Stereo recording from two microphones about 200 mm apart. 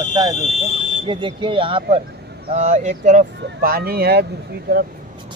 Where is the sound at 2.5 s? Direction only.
35° right (ahead or behind).